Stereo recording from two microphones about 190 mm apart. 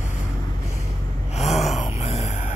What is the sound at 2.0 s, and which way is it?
Music, 35° left (ahead or behind).